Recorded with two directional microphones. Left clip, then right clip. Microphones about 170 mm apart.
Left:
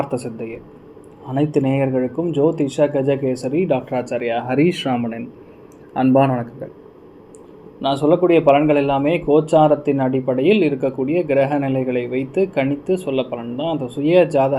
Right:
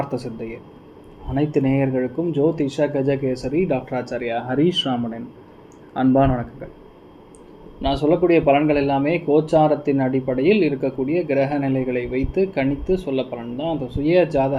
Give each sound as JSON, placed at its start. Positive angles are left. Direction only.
{"t": 0.0, "sound": "speech", "side_deg": 25}
{"t": 7.8, "sound": "speech", "side_deg": 25}